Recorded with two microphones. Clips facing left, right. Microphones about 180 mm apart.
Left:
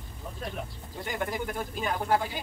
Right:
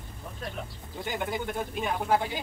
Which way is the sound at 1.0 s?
5° right (ahead or behind).